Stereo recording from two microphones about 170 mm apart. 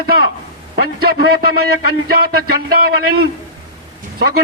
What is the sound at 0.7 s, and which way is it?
Speech, 65° right (ahead or behind).